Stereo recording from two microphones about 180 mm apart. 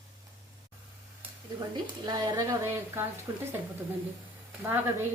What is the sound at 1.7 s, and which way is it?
A woman's voice, 25° right (ahead or behind).